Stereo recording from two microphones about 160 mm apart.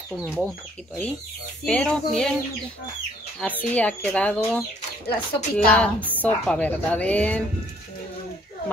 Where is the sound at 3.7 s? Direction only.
10° left (ahead or behind).